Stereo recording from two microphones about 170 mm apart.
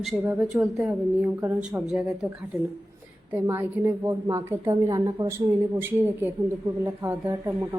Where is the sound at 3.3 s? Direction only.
15° right (ahead or behind).